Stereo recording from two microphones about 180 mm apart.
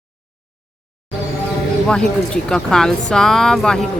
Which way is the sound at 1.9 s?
5° left (ahead or behind).